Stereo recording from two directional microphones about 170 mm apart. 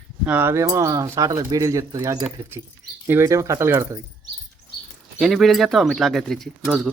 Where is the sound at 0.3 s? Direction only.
10° right (ahead or behind).